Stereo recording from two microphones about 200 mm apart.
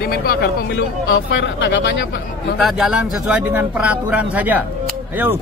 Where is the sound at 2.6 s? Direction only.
5° right (ahead or behind).